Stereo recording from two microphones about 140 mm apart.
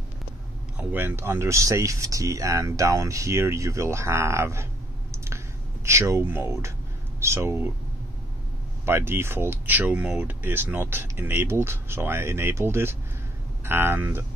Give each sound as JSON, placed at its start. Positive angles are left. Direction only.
{"t": 0.7, "sound": "speech", "side_deg": -15}
{"t": 5.1, "sound": "a sound", "side_deg": -20}
{"t": 5.9, "sound": "speech", "side_deg": -20}
{"t": 8.8, "sound": "speech", "side_deg": -15}